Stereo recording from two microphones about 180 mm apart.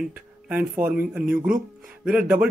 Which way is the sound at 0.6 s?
55° right (ahead or behind).